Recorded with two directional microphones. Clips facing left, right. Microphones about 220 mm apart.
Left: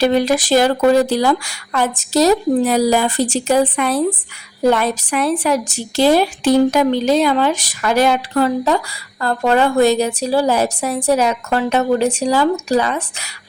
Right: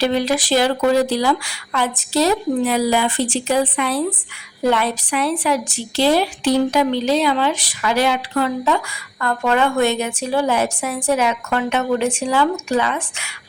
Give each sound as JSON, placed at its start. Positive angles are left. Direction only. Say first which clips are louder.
{"t": 0.0, "sound": "a woman's voice", "louder": "left 4 dB", "side_deg": 45}